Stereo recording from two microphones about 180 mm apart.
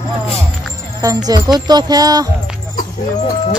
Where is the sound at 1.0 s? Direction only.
20° right (ahead or behind).